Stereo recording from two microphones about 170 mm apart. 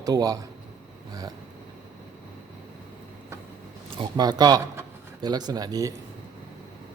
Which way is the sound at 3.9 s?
25° right (ahead or behind).